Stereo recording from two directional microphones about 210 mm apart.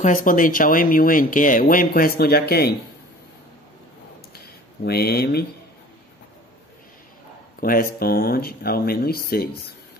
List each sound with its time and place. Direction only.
0.0 s speech: 40° left (ahead or behind)
4.8 s speech: 50° left (ahead or behind)
7.6 s speech: 45° left (ahead or behind)